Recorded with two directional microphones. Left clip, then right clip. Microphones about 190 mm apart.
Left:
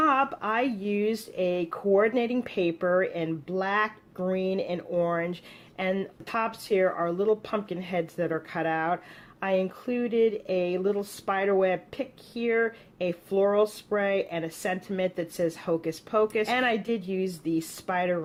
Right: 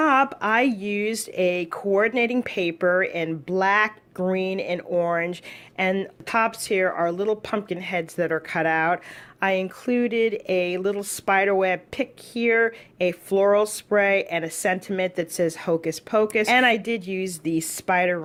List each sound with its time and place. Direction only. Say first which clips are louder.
0.0 s speech: right 4 dB; 40° right (ahead or behind)